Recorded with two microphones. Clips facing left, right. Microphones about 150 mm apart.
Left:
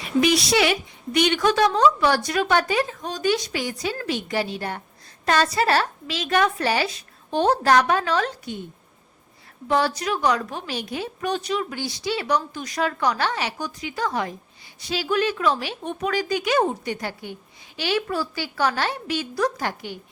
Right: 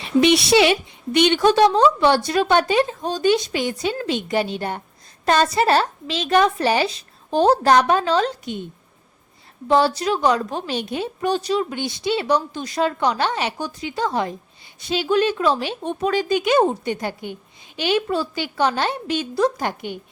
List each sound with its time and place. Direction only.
0.0 s a woman's voice: 25° right (ahead or behind)
7.3 s a woman's voice: 35° right (ahead or behind)
7.6 s a woman's voice: 25° right (ahead or behind)
9.6 s a woman's voice: 30° right (ahead or behind)